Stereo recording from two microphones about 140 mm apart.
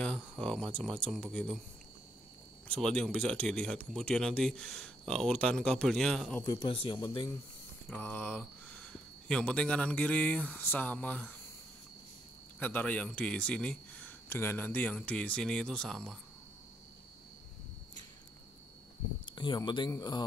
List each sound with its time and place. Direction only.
0.0 s speech: 10° left (ahead or behind)
2.7 s speech: 5° left (ahead or behind)
6.4 s speech: 30° left (ahead or behind)
7.9 s a sound: 10° left (ahead or behind)
9.3 s speech: 5° left (ahead or behind)
12.5 s speech: 10° left (ahead or behind)
19.2 s a man's voice: 35° left (ahead or behind)